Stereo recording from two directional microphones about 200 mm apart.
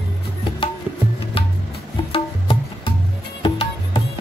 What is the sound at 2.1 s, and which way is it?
Music, 25° left (ahead or behind).